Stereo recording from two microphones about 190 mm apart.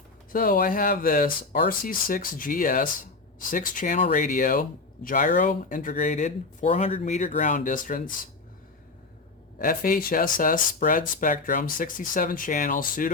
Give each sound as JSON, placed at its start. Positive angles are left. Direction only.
{"t": 0.3, "sound": "speech", "side_deg": 50}
{"t": 9.6, "sound": "speech", "side_deg": 50}